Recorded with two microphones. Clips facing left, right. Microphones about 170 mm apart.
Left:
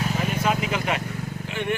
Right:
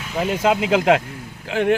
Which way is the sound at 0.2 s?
90° right.